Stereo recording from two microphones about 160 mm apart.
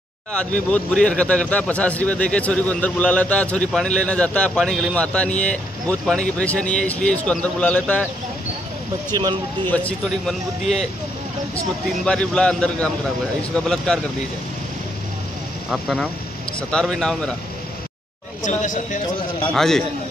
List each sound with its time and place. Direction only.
0.7 s speech: 5° left (ahead or behind)
9.1 s speech: 25° right (ahead or behind)
9.7 s speech: 10° left (ahead or behind)
12.0 s a man's voice: 5° left (ahead or behind)
15.7 s a man's voice: centre (ahead or behind)
18.4 s speech: 50° left (ahead or behind)
19.5 s a man's voice: 5° left (ahead or behind)